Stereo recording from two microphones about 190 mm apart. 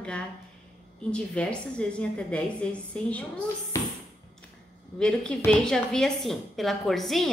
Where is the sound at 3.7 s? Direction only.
15° left (ahead or behind).